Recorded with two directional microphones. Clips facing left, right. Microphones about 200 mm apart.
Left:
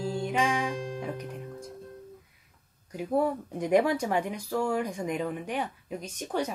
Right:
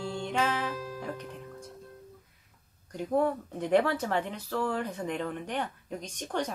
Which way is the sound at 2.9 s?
10° left (ahead or behind).